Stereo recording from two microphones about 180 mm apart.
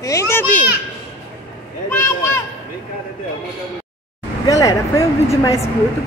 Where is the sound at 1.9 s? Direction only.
15° left (ahead or behind).